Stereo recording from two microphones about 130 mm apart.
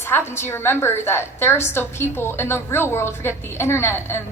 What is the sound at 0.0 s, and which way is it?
A woman's voice, 20° left (ahead or behind).